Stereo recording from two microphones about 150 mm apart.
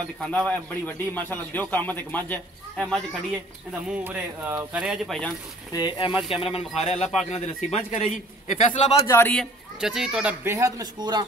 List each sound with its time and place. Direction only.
0.2 s speech: 5° left (ahead or behind)
4.0 s speech: 10° right (ahead or behind)
5.7 s a man's voice: 30° left (ahead or behind); by 8.7 s 50° left (ahead or behind)
9.0 s speech: 15° left (ahead or behind)
9.3 s speech: centre (ahead or behind)
10.4 s speech: 20° right (ahead or behind)